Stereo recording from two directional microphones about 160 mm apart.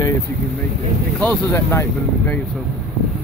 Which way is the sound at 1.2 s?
10° left (ahead or behind).